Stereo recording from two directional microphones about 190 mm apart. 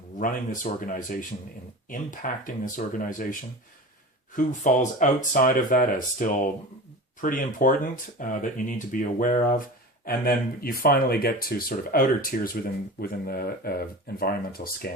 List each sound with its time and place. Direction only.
0.2 s speech: 45° left (ahead or behind)
4.4 s speech: 40° left (ahead or behind)